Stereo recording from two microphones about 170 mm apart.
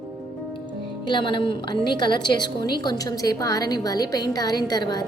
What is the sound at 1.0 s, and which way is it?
A woman's voice, 30° left (ahead or behind).